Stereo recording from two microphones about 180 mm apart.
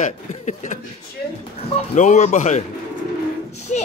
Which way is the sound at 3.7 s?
40° left (ahead or behind).